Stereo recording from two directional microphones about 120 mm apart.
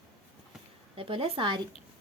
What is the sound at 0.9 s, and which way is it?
Speech, 50° right (ahead or behind).